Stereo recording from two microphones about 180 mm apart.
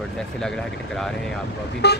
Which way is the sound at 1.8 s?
65° left (ahead or behind).